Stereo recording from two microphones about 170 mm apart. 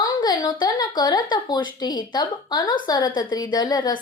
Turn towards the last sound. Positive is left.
turn(degrees=25)  # may be behind; listen again after turning